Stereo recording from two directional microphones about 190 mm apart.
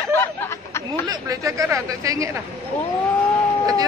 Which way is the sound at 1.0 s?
20° right (ahead or behind).